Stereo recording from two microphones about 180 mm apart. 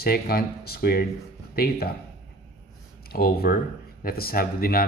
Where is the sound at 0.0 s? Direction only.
60° left (ahead or behind).